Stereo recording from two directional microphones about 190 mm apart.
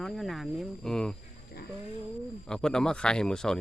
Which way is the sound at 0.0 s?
Centre (ahead or behind).